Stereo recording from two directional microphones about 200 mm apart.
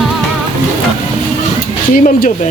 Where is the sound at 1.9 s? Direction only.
45° left (ahead or behind).